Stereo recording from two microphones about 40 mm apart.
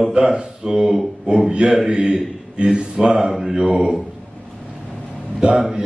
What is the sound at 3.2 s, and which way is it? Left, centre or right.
Mantra, centre.